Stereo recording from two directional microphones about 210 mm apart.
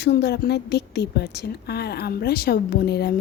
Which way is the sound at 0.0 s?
50° left (ahead or behind).